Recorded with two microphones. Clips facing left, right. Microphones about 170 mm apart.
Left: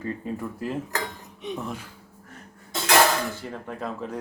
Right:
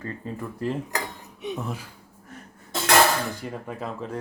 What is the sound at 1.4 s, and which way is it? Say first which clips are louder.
Speech: right 1 dB; 10° right (ahead or behind).